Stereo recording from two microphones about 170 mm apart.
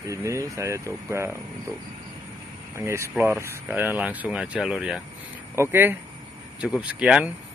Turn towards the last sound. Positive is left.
turn(degrees=-5)  # may be behind; listen again after turning